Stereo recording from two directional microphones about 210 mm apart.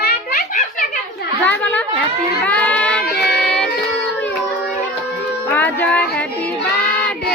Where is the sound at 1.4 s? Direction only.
10° left (ahead or behind).